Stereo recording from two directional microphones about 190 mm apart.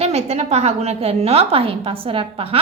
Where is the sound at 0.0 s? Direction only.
35° right (ahead or behind).